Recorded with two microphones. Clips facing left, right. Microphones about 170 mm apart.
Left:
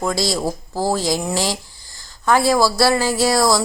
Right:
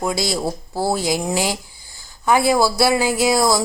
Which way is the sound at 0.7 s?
15° right (ahead or behind).